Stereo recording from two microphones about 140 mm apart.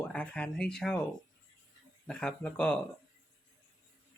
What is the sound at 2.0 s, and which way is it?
Speech, 5° left (ahead or behind).